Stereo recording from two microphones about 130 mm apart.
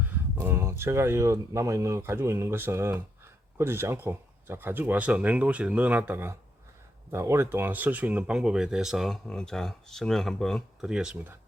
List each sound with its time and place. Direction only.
0.3 s speech: 20° right (ahead or behind)